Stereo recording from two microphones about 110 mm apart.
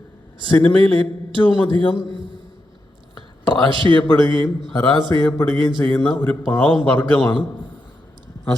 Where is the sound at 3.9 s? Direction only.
35° left (ahead or behind).